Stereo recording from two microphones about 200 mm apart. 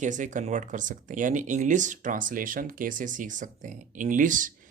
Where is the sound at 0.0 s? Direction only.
40° right (ahead or behind).